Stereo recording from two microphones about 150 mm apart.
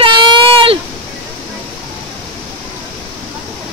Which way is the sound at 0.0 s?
35° right (ahead or behind).